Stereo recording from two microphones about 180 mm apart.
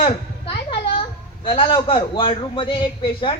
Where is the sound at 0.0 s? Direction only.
30° left (ahead or behind).